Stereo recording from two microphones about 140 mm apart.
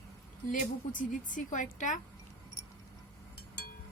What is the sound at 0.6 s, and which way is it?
A woman's voice, 70° left (ahead or behind).